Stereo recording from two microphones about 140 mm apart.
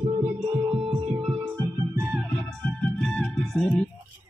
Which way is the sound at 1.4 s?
15° right (ahead or behind).